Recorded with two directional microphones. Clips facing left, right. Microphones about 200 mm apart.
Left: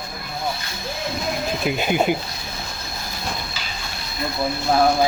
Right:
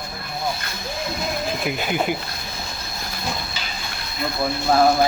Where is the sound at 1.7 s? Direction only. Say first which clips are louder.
Left 5 dB; 20° left (ahead or behind).